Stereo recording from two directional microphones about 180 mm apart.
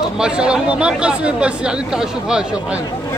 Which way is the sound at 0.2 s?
5° right (ahead or behind).